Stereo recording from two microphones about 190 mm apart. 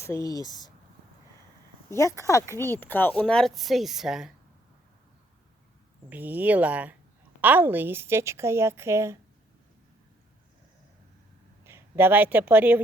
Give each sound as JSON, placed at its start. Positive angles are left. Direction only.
{"t": 0.0, "sound": "speech", "side_deg": 15}
{"t": 1.9, "sound": "speech", "side_deg": 15}
{"t": 6.1, "sound": "a woman's voice", "side_deg": -10}
{"t": 11.6, "sound": "speech", "side_deg": -10}